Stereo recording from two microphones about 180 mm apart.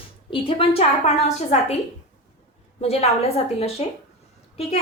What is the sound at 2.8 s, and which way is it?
A woman's voice, 35° left (ahead or behind).